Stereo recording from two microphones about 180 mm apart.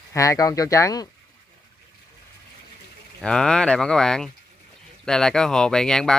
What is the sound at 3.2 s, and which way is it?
Speech, 5° left (ahead or behind).